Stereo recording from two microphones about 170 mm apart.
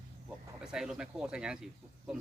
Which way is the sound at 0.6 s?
5° right (ahead or behind).